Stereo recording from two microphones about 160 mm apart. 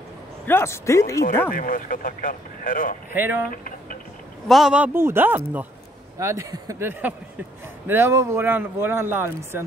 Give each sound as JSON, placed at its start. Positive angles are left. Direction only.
{"t": 0.5, "sound": "speech", "side_deg": 15}
{"t": 1.5, "sound": "speech", "side_deg": 60}
{"t": 3.1, "sound": "speech", "side_deg": -10}
{"t": 3.4, "sound": "speech", "side_deg": 60}
{"t": 4.5, "sound": "speech", "side_deg": -5}